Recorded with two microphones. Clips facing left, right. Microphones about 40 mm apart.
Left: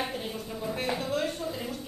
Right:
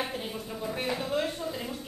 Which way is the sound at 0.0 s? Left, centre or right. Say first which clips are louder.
Even; centre.